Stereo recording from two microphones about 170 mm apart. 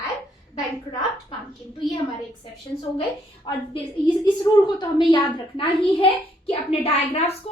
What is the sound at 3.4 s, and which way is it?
A woman's voice, 30° left (ahead or behind).